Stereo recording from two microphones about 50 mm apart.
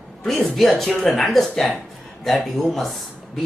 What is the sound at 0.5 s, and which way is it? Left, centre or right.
Speech, centre.